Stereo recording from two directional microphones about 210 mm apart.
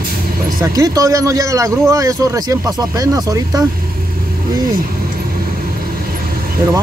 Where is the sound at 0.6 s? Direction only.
15° right (ahead or behind).